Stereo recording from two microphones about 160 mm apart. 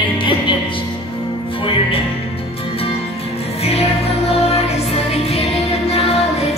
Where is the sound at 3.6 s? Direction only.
40° left (ahead or behind).